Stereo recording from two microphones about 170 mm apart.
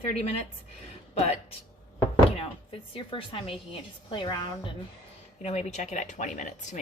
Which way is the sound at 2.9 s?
30° left (ahead or behind).